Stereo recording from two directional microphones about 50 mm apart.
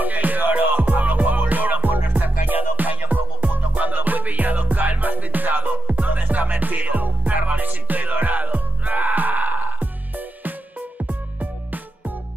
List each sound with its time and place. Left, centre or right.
0.0 s music: right